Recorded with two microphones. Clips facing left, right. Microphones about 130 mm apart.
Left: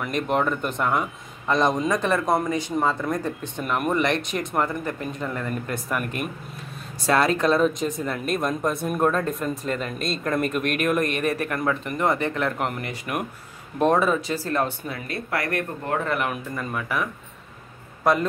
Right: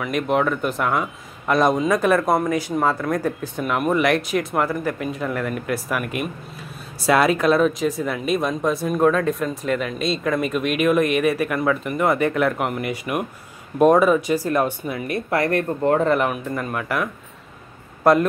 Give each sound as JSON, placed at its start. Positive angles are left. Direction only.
{"t": 0.0, "sound": "speech", "side_deg": 0}
{"t": 16.5, "sound": "speech", "side_deg": -5}